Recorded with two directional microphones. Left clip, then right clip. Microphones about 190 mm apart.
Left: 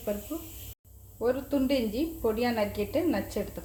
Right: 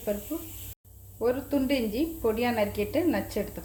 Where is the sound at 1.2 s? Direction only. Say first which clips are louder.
Right 1 dB; 5° right (ahead or behind).